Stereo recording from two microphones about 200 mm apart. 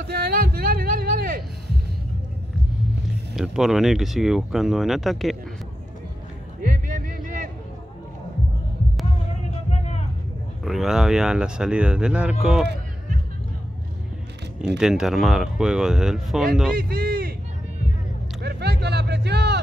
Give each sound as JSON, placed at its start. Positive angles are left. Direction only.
{"t": 0.0, "sound": "a sound", "side_deg": -55}
{"t": 3.3, "sound": "speech", "side_deg": 0}
{"t": 6.6, "sound": "a sound", "side_deg": -45}
{"t": 9.7, "sound": "vehicle", "side_deg": 35}
{"t": 10.6, "sound": "speech", "side_deg": 0}
{"t": 14.8, "sound": "speech", "side_deg": 0}
{"t": 16.7, "sound": "a man's voice", "side_deg": -45}
{"t": 18.4, "sound": "vehicle", "side_deg": -55}